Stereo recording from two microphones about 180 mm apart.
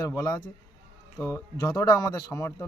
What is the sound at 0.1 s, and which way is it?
Speech, 15° left (ahead or behind).